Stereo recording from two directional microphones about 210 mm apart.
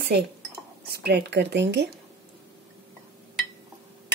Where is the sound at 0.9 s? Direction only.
50° right (ahead or behind).